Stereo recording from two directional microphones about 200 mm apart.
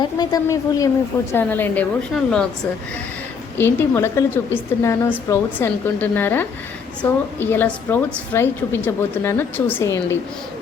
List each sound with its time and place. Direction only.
0.0 s a woman's voice: 20° left (ahead or behind); by 2.5 s 5° left (ahead or behind)
3.6 s a woman's voice: 10° left (ahead or behind)